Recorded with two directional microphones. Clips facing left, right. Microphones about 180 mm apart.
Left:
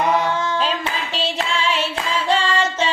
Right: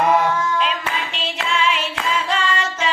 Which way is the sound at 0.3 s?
30° left (ahead or behind).